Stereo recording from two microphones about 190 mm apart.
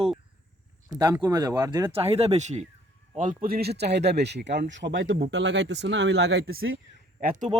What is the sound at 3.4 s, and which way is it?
Speech, 55° right (ahead or behind).